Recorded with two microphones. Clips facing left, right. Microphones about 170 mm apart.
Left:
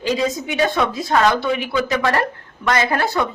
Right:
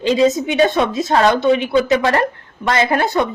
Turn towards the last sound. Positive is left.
turn(degrees=-20)  # may be behind; listen again after turning